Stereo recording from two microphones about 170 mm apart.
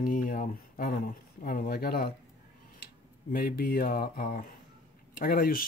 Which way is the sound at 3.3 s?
60° left (ahead or behind).